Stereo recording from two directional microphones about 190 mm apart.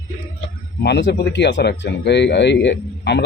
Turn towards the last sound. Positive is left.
turn(degrees=65)  # may be behind; listen again after turning